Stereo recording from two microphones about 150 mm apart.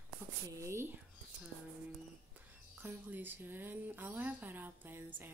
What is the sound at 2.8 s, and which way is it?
Speech, 10° right (ahead or behind).